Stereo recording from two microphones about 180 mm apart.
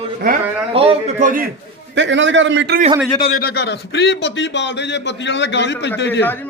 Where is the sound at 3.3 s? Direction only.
60° left (ahead or behind).